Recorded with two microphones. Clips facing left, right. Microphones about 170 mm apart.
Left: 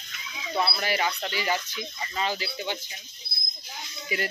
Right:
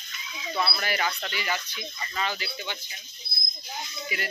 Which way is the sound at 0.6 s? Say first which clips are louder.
Left 2 dB; 25° left (ahead or behind).